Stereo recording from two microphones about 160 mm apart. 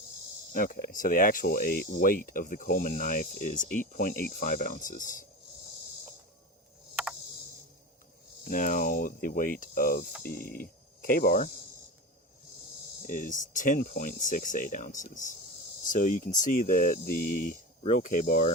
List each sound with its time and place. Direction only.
0.5 s speech: 60° left (ahead or behind)
8.4 s speech: 55° left (ahead or behind)
13.1 s speech: 55° left (ahead or behind)
17.8 s speech: 50° left (ahead or behind)